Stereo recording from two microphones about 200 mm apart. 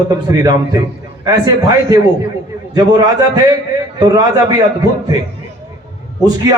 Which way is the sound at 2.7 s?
20° right (ahead or behind).